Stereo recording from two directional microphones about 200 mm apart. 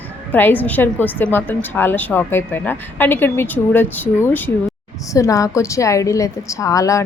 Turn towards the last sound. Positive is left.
turn(degrees=15)  # may be behind; listen again after turning